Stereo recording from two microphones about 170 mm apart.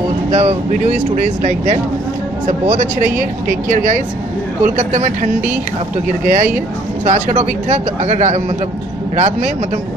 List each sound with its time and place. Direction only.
0.3 s speech: 40° right (ahead or behind)